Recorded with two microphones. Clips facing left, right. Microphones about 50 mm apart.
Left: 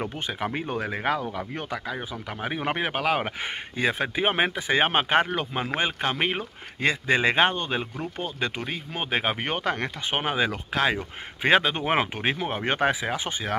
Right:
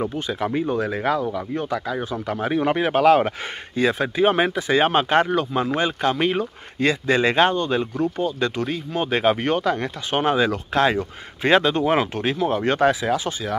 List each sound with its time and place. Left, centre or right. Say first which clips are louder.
0.3 s speech: right 6 dB; left
1.3 s speech: right 6 dB; left
2.0 s speech: right 8 dB; centre
9.6 s speech: right 5 dB; left
10.1 s speech: right 7 dB; centre
10.7 s speech: right 5 dB; centre
11.8 s speech: right 4 dB; left